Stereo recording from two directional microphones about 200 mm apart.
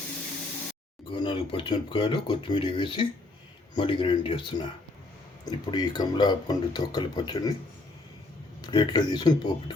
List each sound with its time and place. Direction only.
1.1 s speech: 25° left (ahead or behind)
8.6 s speech: 20° left (ahead or behind)